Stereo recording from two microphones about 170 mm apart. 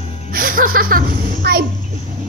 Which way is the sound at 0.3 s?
55° right (ahead or behind).